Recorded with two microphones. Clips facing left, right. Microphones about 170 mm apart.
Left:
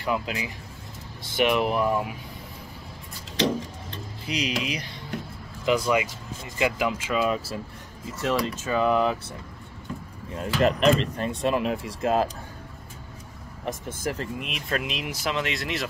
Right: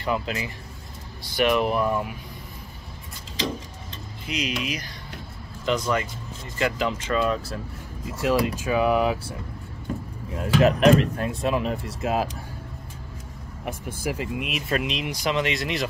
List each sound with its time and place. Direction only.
0.0 s speech: 5° left (ahead or behind)
4.3 s speech: 35° left (ahead or behind)
5.7 s speech: 10° left (ahead or behind)
8.2 s speech: 10° right (ahead or behind)
10.3 s speech: 5° right (ahead or behind)
13.7 s speech: 10° right (ahead or behind)